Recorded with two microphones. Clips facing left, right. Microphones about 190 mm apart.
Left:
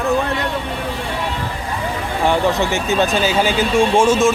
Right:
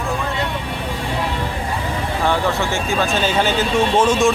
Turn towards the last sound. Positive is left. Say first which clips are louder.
# left 2 dB
turn(degrees=10)  # may be behind; listen again after turning